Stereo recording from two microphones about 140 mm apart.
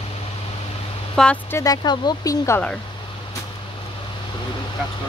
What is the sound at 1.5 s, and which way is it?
Speech, 30° left (ahead or behind).